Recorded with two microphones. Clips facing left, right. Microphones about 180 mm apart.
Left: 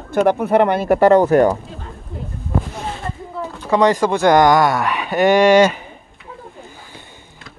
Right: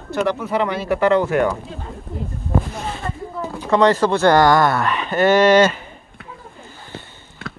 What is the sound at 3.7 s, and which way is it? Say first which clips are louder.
Speech: even; 10° left (ahead or behind).